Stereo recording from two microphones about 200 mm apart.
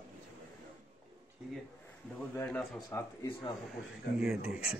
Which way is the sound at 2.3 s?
10° left (ahead or behind).